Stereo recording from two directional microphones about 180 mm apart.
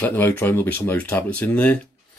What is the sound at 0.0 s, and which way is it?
Speech, 10° left (ahead or behind).